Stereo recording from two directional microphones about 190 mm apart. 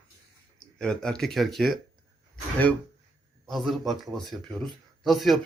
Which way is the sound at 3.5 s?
Centre (ahead or behind).